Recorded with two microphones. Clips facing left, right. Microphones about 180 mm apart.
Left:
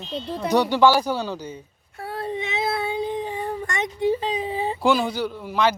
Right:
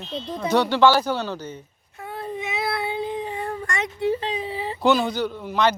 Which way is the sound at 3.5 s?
15° left (ahead or behind).